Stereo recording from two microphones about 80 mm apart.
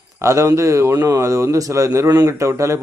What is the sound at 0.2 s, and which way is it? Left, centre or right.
A man's voice, right.